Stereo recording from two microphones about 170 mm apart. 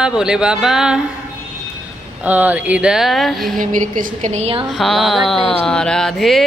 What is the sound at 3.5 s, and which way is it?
A woman's voice, 50° right (ahead or behind).